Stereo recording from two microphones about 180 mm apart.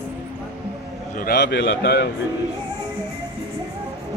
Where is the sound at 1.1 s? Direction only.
55° left (ahead or behind).